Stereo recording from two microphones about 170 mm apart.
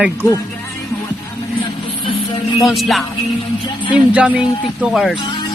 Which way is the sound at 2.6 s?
Centre (ahead or behind).